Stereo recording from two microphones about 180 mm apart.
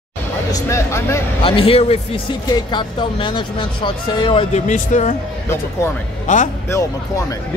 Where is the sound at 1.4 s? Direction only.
35° left (ahead or behind).